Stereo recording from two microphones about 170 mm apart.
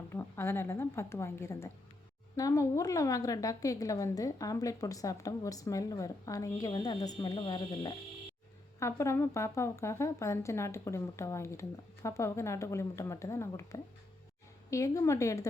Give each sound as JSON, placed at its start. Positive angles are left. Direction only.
{"t": 0.1, "sound": "speech", "side_deg": 15}
{"t": 8.8, "sound": "speech", "side_deg": 15}